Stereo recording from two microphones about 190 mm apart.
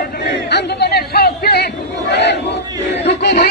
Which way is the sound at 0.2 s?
60° left (ahead or behind).